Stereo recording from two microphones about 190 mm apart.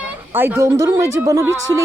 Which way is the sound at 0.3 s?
10° right (ahead or behind).